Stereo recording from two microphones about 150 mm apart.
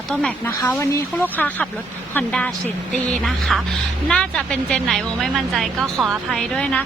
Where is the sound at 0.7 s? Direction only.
15° left (ahead or behind).